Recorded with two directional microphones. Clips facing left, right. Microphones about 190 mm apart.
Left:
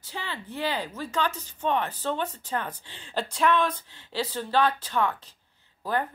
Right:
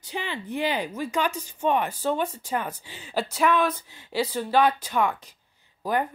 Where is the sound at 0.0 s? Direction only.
15° right (ahead or behind).